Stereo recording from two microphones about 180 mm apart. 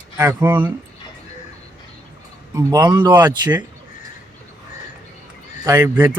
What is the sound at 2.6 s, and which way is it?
Speech, 20° right (ahead or behind).